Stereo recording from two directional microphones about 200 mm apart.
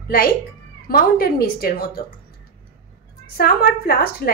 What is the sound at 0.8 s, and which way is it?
A woman's voice, 50° left (ahead or behind).